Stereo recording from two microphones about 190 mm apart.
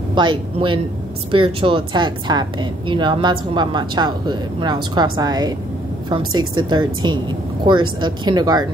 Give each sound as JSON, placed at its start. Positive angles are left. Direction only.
{"t": 0.1, "sound": "speech", "side_deg": -25}